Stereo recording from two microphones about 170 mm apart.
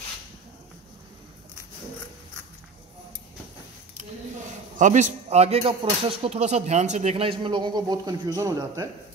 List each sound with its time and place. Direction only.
4.7 s speech: 45° right (ahead or behind); by 8.8 s 20° right (ahead or behind)